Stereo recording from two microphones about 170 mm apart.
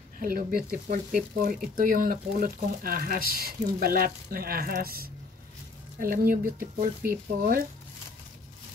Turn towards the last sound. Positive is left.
turn(degrees=-60)  # may be behind; listen again after turning